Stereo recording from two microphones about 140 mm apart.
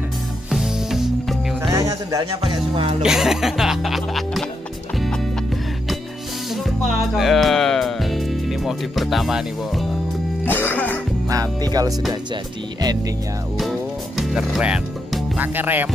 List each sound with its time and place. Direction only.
0.5 s music: centre (ahead or behind)
1.7 s speech: 20° right (ahead or behind)
2.4 s music: 40° right (ahead or behind)
3.0 s music: 5° right (ahead or behind)
6.5 s speech: centre (ahead or behind)
10.4 s music: 15° left (ahead or behind)
11.2 s speech: 25° right (ahead or behind)
13.6 s music: centre (ahead or behind)